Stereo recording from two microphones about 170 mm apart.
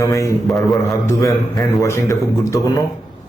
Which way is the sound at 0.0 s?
20° left (ahead or behind).